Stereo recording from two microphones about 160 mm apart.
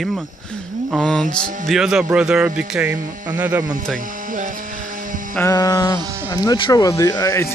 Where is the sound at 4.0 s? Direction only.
55° right (ahead or behind).